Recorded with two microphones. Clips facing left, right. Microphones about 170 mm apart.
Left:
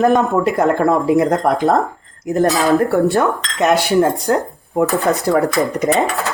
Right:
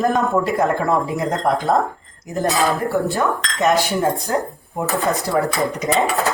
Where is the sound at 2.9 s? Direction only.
65° left (ahead or behind).